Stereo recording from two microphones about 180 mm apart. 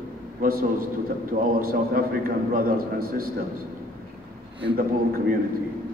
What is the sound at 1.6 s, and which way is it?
A man's voice, 55° right (ahead or behind).